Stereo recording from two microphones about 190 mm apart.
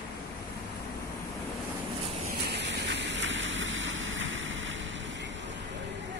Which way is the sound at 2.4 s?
65° right (ahead or behind).